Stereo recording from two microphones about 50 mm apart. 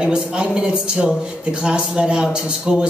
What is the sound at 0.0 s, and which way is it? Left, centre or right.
A man's voice, centre.